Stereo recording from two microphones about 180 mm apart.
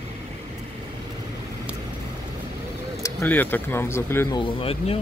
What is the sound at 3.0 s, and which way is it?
Speech, 10° left (ahead or behind).